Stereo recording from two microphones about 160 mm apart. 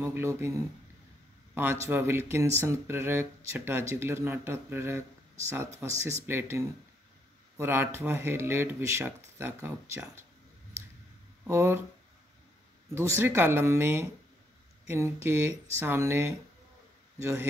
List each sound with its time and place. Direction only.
0.0 s speech: 15° right (ahead or behind)
11.4 s speech: 15° right (ahead or behind)
12.9 s speech: 15° right (ahead or behind)